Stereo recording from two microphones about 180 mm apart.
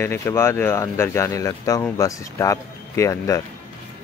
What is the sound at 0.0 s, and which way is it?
Speech, 15° left (ahead or behind).